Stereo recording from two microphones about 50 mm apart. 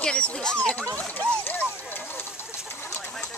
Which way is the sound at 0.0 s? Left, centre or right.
Centre.